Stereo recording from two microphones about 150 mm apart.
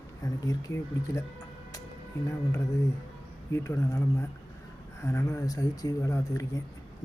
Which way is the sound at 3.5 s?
20° left (ahead or behind).